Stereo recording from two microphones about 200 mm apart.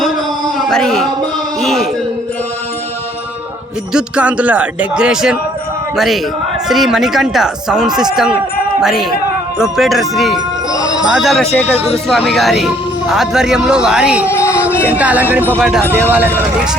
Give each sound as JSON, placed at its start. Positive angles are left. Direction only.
{"t": 0.6, "sound": "speech", "side_deg": 0}
{"t": 3.9, "sound": "speech", "side_deg": -5}
{"t": 6.7, "sound": "speech", "side_deg": 0}
{"t": 11.6, "sound": "speech", "side_deg": 30}
{"t": 12.0, "sound": "speech", "side_deg": 0}
{"t": 14.3, "sound": "a sound", "side_deg": 15}
{"t": 14.8, "sound": "speech", "side_deg": -5}
{"t": 15.8, "sound": "speech", "side_deg": 10}
{"t": 16.0, "sound": "speech", "side_deg": -10}